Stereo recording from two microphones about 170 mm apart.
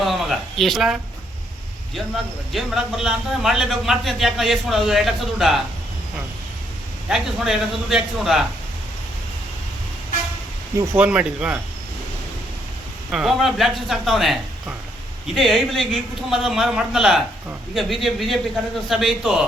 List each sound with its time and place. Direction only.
0.0 s a sound: centre (ahead or behind)
2.5 s a man's voice: centre (ahead or behind)
7.1 s a man's voice: centre (ahead or behind)
10.8 s speech: 10° right (ahead or behind)
13.1 s a man's voice: centre (ahead or behind)
15.4 s a man's voice: centre (ahead or behind)